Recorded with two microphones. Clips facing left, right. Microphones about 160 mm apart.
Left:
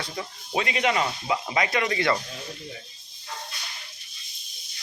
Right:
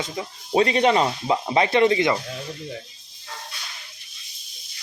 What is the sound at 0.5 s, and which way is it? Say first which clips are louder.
Speech: right 7 dB; 35° right (ahead or behind).